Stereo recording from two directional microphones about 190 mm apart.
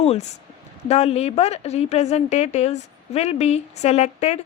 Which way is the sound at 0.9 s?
35° left (ahead or behind).